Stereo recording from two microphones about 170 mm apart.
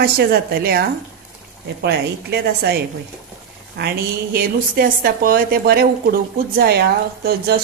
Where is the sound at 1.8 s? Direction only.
75° right (ahead or behind).